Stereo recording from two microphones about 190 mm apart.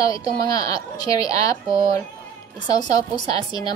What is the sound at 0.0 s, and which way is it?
A child's voice, 20° left (ahead or behind).